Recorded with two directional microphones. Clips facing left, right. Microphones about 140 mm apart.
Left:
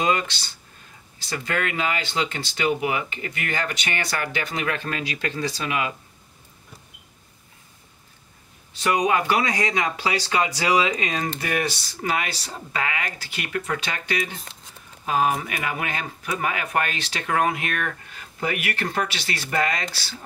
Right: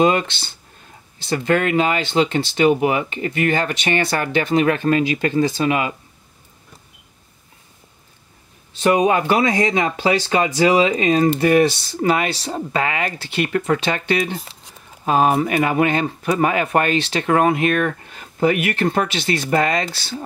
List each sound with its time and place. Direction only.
1.2 s speech: 30° right (ahead or behind)
8.8 s speech: 30° right (ahead or behind)